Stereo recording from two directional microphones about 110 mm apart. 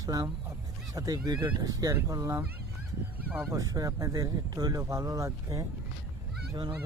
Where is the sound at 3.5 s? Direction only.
35° right (ahead or behind).